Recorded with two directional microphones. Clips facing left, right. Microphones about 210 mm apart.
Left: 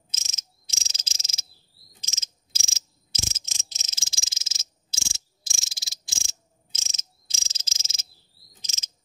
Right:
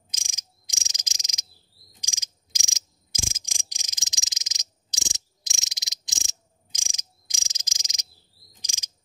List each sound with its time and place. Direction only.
0.1 s cricket: 15° right (ahead or behind)